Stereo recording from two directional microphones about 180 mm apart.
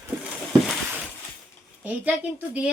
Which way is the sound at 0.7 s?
10° right (ahead or behind).